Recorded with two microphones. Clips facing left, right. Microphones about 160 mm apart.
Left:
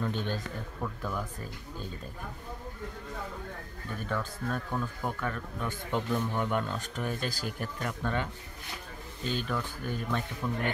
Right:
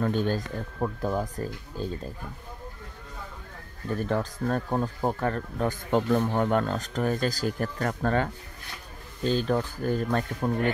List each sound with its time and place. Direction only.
0.0 s speech: 45° right (ahead or behind)
4.1 s speech: 40° right (ahead or behind)
9.2 s speech: 35° right (ahead or behind)